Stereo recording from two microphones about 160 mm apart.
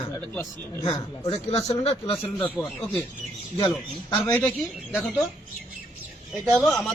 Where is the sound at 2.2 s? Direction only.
10° left (ahead or behind).